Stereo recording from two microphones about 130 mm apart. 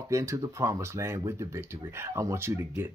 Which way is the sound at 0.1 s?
25° right (ahead or behind).